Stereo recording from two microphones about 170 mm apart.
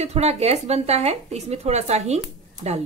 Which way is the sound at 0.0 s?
40° right (ahead or behind).